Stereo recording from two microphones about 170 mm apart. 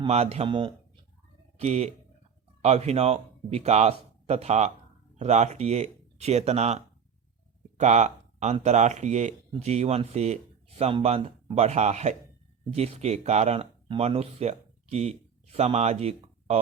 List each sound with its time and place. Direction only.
0.0 s speech: 40° right (ahead or behind)